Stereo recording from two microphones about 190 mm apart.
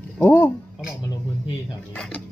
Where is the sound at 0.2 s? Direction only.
10° left (ahead or behind).